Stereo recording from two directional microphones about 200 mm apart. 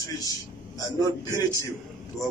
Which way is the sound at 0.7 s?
20° left (ahead or behind).